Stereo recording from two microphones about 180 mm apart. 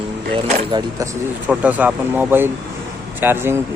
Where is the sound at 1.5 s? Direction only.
10° right (ahead or behind).